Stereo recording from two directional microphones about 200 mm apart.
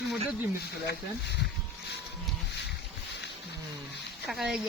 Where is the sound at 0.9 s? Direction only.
60° left (ahead or behind).